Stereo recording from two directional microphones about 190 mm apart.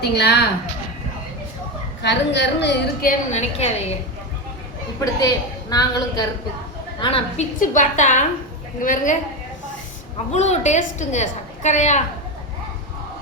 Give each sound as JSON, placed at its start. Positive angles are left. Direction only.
{"t": 0.0, "sound": "a woman's voice", "side_deg": 60}
{"t": 2.0, "sound": "a woman's voice", "side_deg": 65}
{"t": 4.9, "sound": "a woman's voice", "side_deg": 20}
{"t": 7.0, "sound": "a woman's voice", "side_deg": 30}
{"t": 7.6, "sound": "a woman's voice", "side_deg": 40}
{"t": 10.3, "sound": "a woman's voice", "side_deg": 35}